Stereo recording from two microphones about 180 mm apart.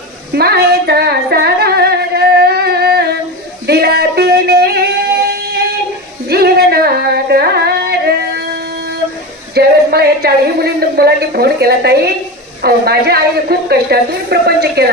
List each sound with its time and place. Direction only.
0.3 s singing: 65° right (ahead or behind)
3.7 s a sound: 65° right (ahead or behind)
6.2 s singing: 60° right (ahead or behind)
9.6 s a woman's voice: 60° right (ahead or behind)